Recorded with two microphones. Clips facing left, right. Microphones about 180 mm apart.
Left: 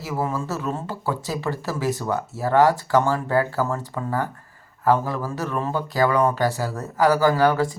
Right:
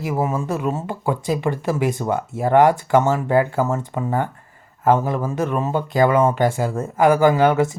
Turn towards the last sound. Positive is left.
turn(degrees=-20)  # may be behind; listen again after turning